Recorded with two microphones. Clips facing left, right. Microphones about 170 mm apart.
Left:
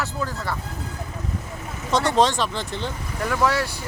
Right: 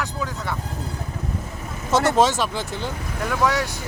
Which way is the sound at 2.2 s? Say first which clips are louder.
Right 1 dB; 5° right (ahead or behind).